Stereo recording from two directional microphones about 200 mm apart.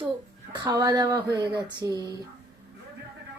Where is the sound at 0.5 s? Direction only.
20° right (ahead or behind).